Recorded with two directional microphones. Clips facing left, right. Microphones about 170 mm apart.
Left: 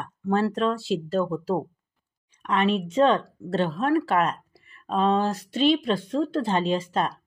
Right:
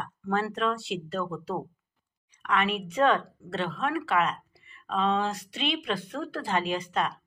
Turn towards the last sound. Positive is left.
turn(degrees=35)  # may be behind; listen again after turning